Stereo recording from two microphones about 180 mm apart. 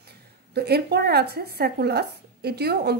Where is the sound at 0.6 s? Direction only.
65° right (ahead or behind).